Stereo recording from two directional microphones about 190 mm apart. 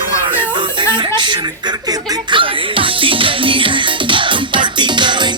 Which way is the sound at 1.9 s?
25° right (ahead or behind).